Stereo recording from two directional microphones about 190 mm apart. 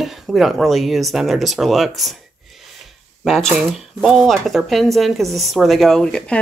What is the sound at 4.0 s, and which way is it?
Speech, centre (ahead or behind).